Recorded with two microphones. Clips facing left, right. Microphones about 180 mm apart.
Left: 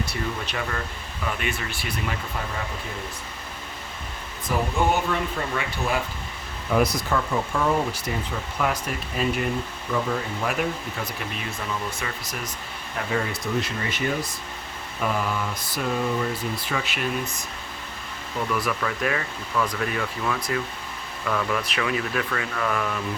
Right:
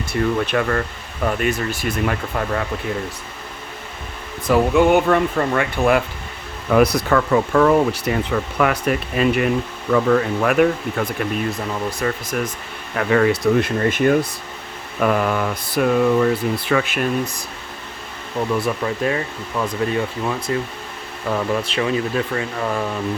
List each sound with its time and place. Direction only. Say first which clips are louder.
0.0 s speech: right 9 dB; 55° right (ahead or behind)
4.4 s speech: right 9 dB; 70° right (ahead or behind)
6.7 s speech: right 7 dB; 70° right (ahead or behind)
11.5 s speech: right 6 dB; 35° right (ahead or behind)
12.9 s speech: right 11 dB; 70° right (ahead or behind); by 17.1 s 50° right (ahead or behind)
18.5 s speech: right 5 dB; 30° right (ahead or behind)